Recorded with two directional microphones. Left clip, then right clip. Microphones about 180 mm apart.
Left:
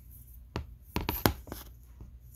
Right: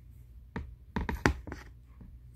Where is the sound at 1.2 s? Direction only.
30° left (ahead or behind).